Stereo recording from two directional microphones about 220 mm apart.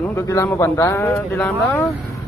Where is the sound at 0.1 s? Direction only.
15° left (ahead or behind).